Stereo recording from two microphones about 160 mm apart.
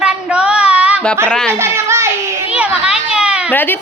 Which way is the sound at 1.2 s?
5° left (ahead or behind).